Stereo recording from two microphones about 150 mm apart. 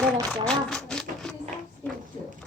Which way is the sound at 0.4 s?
5° left (ahead or behind).